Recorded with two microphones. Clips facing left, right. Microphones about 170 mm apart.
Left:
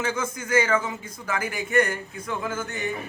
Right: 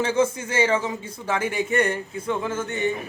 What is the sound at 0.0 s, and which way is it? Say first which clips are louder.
A man's voice: right 7 dB; 30° right (ahead or behind).